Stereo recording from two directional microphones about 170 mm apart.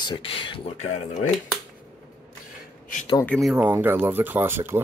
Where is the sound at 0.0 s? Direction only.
30° left (ahead or behind).